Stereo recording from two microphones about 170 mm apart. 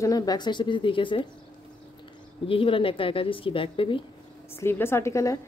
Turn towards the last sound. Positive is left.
turn(degrees=20)  # may be behind; listen again after turning